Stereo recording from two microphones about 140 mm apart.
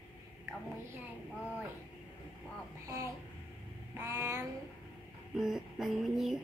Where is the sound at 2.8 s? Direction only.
25° right (ahead or behind).